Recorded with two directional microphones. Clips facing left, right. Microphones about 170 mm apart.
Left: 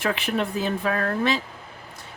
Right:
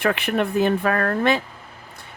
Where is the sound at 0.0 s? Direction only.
60° right (ahead or behind).